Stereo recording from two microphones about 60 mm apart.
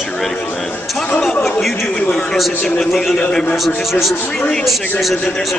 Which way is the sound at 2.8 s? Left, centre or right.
Centre.